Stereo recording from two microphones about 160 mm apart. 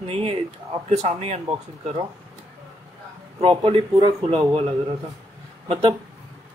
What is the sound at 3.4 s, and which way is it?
Speech, 35° right (ahead or behind).